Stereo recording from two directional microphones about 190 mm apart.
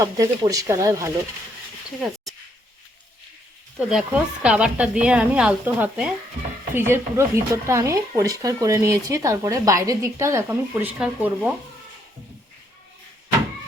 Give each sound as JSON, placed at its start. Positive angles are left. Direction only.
{"t": 0.0, "sound": "speech", "side_deg": -15}
{"t": 3.8, "sound": "a woman's voice", "side_deg": -5}